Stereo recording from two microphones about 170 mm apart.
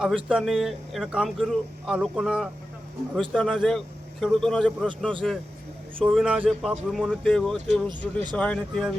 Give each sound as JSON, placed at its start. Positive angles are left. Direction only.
{"t": 0.3, "sound": "speech", "side_deg": 0}
{"t": 7.9, "sound": "speech", "side_deg": -25}
{"t": 8.4, "sound": "speech", "side_deg": 5}